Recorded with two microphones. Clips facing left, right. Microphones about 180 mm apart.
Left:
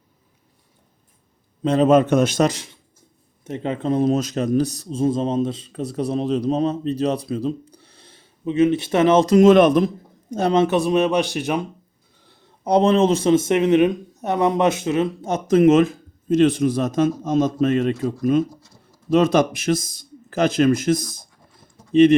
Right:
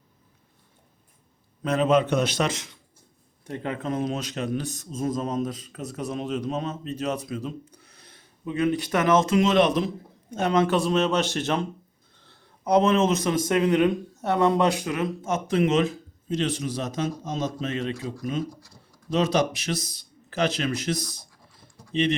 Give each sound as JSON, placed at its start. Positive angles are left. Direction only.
{"t": 1.6, "sound": "a man's voice", "side_deg": 30}
{"t": 1.9, "sound": "speech", "side_deg": 45}
{"t": 3.4, "sound": "a man's voice", "side_deg": 25}
{"t": 10.3, "sound": "speech", "side_deg": 30}
{"t": 12.6, "sound": "a man's voice", "side_deg": 30}
{"t": 19.1, "sound": "speech", "side_deg": 55}